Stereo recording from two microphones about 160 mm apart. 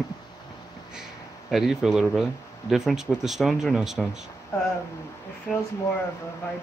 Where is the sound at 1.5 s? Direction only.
Centre (ahead or behind).